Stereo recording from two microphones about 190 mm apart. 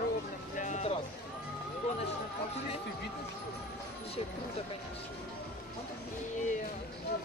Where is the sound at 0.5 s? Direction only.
40° left (ahead or behind).